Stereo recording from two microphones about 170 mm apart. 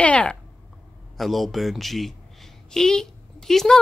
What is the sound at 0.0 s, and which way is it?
A woman's voice, 5° left (ahead or behind).